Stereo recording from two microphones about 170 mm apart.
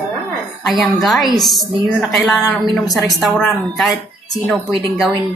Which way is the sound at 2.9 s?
Centre (ahead or behind).